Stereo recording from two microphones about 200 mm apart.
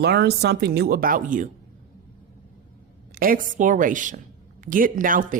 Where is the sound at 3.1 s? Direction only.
45° right (ahead or behind).